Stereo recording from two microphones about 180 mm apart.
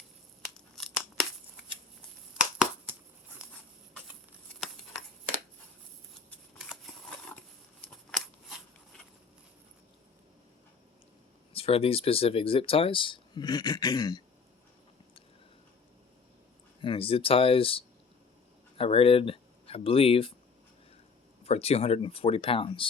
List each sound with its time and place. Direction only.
0.5 s tearing: centre (ahead or behind)
6.6 s scissors: centre (ahead or behind)
11.5 s speech: 30° left (ahead or behind)
16.8 s speech: 30° left (ahead or behind)
21.4 s speech: 35° left (ahead or behind)